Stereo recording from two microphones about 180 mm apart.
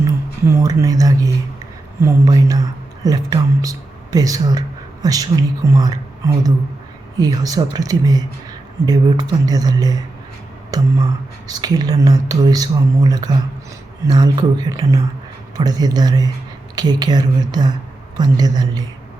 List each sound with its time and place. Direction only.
0.0 s speech: 15° right (ahead or behind)